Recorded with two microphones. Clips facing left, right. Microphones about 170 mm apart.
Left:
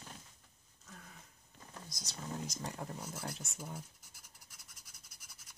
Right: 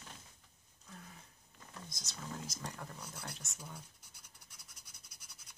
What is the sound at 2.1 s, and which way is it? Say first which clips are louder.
Speech: left 3 dB; 20° left (ahead or behind).